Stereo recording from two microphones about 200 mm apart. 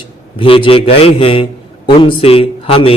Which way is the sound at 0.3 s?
25° left (ahead or behind).